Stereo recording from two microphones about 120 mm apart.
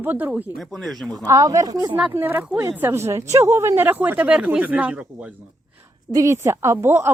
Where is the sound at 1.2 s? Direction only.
30° right (ahead or behind).